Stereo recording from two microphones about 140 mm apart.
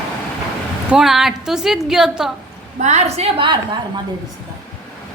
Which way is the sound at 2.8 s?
55° right (ahead or behind).